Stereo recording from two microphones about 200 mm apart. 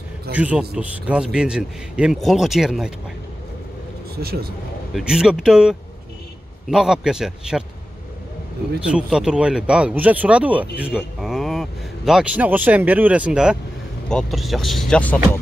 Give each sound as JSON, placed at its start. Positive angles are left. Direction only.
{"t": 0.4, "sound": "speech", "side_deg": -5}
{"t": 4.2, "sound": "a man's voice", "side_deg": -50}
{"t": 4.9, "sound": "speech", "side_deg": -5}
{"t": 8.9, "sound": "speech", "side_deg": -5}